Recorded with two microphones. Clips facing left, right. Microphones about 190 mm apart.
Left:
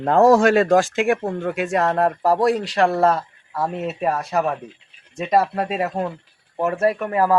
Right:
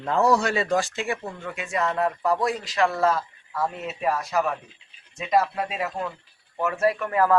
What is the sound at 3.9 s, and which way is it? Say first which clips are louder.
Speech: left 3 dB; 40° left (ahead or behind).